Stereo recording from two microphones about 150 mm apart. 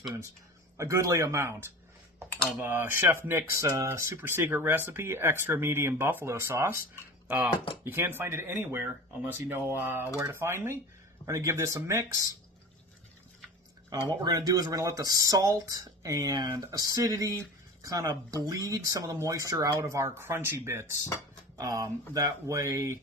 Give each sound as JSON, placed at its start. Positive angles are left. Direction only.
{"t": 0.8, "sound": "speech", "side_deg": -20}
{"t": 14.3, "sound": "speech", "side_deg": -25}